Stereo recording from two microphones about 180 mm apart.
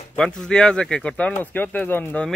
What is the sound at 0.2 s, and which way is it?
Speech, 5° left (ahead or behind).